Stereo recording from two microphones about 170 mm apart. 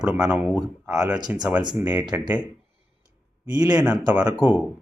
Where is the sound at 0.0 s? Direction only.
5° right (ahead or behind).